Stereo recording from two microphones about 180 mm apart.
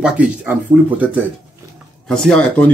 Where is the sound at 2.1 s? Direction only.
5° left (ahead or behind).